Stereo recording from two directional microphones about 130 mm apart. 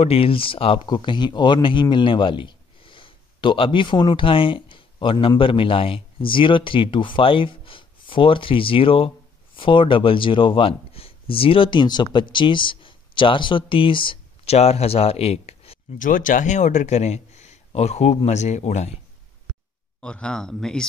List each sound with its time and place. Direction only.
0.0 s speech: 45° left (ahead or behind)
16.0 s speech: 90° left; by 18.9 s 60° left (ahead or behind)
20.0 s speech: 10° left (ahead or behind)